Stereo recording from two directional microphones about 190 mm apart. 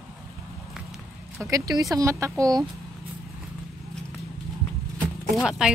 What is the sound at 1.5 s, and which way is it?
Speech, 20° right (ahead or behind).